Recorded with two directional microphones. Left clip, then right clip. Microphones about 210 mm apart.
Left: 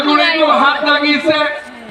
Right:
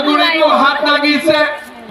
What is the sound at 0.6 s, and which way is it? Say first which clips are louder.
Speech: even; 45° right (ahead or behind).